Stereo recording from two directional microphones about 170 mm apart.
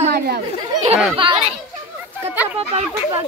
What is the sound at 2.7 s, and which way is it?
Speech, 30° right (ahead or behind).